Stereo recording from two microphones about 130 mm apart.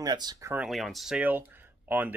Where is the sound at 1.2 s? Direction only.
15° right (ahead or behind).